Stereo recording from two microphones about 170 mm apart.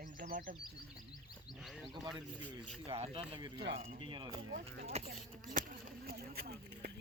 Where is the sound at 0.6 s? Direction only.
25° left (ahead or behind).